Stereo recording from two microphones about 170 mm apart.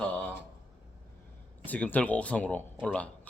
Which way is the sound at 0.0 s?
10° left (ahead or behind).